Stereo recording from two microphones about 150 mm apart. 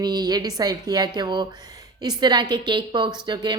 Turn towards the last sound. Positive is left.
turn(degrees=-30)  # may be behind; listen again after turning